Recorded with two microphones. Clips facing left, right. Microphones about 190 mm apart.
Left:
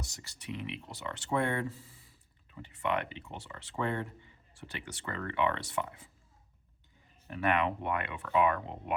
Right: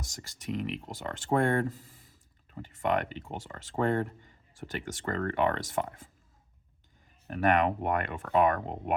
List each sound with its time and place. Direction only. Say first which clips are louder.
0.1 s speech: right 6 dB; 45° right (ahead or behind)
7.3 s speech: right 4 dB; 45° right (ahead or behind)